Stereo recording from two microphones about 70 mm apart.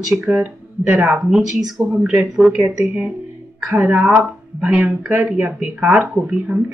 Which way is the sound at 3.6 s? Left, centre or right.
Right.